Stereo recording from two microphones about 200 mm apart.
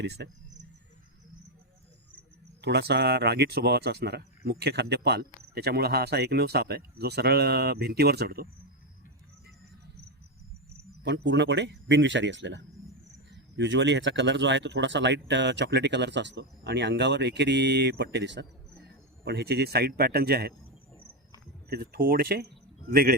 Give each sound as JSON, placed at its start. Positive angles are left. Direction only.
{"t": 0.0, "sound": "speech", "side_deg": -60}
{"t": 2.6, "sound": "speech", "side_deg": -55}
{"t": 11.0, "sound": "speech", "side_deg": -60}
{"t": 21.7, "sound": "speech", "side_deg": -45}